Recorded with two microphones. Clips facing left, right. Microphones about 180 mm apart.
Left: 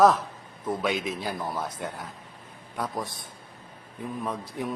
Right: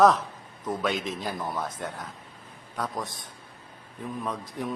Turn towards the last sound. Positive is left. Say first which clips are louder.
# left 1 dB
turn(degrees=15)  # may be behind; listen again after turning